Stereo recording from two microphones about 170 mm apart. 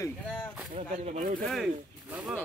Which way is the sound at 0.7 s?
40° right (ahead or behind).